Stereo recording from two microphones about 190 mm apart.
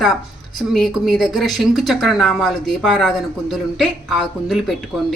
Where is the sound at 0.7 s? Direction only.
Centre (ahead or behind).